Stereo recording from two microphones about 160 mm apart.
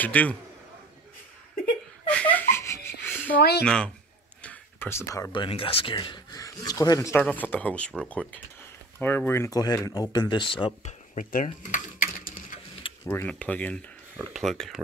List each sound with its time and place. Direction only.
0.0 s speech: 10° left (ahead or behind)
2.0 s giggle: 10° left (ahead or behind)
3.3 s speech: 90° left
3.6 s speech: 5° left (ahead or behind); by 10.7 s 30° left (ahead or behind)
10.8 s speech: 50° left (ahead or behind)
13.0 s speech: 15° left (ahead or behind)
14.1 s speech: centre (ahead or behind)